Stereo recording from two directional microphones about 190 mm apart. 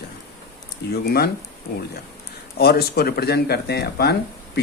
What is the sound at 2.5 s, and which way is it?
Speech, 55° left (ahead or behind).